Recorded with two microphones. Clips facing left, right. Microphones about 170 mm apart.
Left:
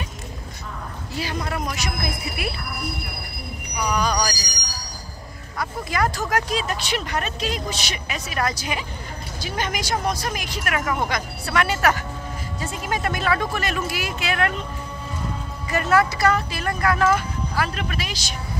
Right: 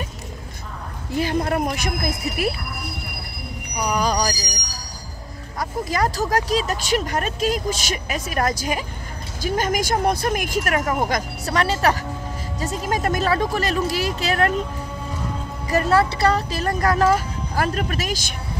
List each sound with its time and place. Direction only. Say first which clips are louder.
1.1 s speech: right 7 dB; 50° right (ahead or behind)
3.9 s speech: right 2 dB; 35° right (ahead or behind)
5.6 s speech: right 2 dB; 35° right (ahead or behind)
15.7 s speech: right 2 dB; 30° right (ahead or behind); by 18.3 s 45° right (ahead or behind)